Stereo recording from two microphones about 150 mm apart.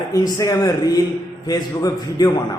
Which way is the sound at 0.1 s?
25° left (ahead or behind).